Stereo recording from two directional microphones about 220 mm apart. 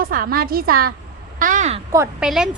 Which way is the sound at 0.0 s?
40° right (ahead or behind).